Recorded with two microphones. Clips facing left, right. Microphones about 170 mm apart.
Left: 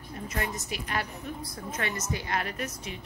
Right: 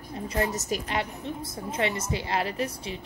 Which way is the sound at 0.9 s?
25° right (ahead or behind).